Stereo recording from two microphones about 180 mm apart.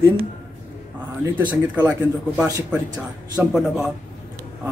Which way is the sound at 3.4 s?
5° right (ahead or behind).